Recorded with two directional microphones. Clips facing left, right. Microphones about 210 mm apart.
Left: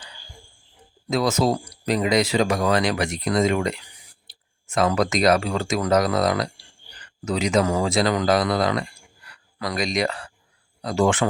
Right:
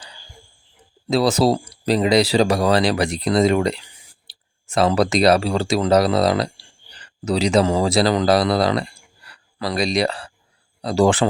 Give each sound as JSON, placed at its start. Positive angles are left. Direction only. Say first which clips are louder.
{"t": 1.0, "sound": "speech", "louder": "right 4 dB", "side_deg": -30}